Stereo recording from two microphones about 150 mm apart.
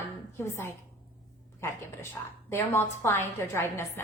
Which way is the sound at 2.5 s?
15° left (ahead or behind).